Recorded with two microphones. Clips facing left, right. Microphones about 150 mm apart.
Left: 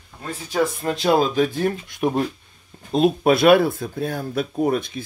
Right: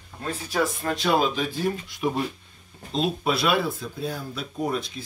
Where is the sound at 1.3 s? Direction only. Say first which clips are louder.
Left 6 dB; 50° left (ahead or behind).